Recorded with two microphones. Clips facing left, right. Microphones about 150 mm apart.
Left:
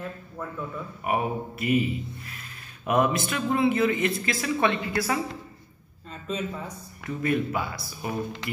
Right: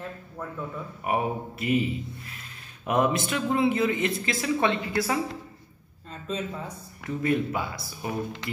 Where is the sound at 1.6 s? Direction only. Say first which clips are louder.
Left 1 dB; 25° right (ahead or behind).